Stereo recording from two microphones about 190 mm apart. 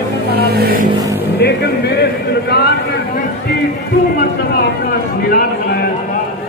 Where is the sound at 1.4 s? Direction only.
60° left (ahead or behind).